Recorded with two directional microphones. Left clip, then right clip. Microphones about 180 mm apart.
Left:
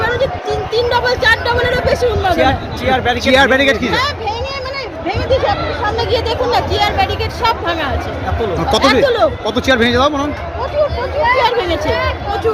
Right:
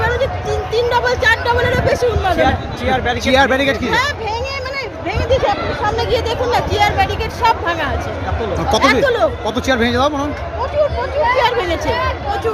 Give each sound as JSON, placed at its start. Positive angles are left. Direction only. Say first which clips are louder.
{"t": 0.0, "sound": "a sound", "louder": "left 2 dB", "side_deg": -5}
{"t": 2.4, "sound": "speech", "louder": "left 2 dB", "side_deg": 55}
{"t": 3.2, "sound": "speech", "louder": "left 3 dB", "side_deg": -10}
{"t": 11.3, "sound": "speech", "louder": "left 1 dB", "side_deg": -5}